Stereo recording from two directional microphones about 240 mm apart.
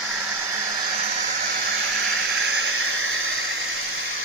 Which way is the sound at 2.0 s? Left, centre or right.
Right.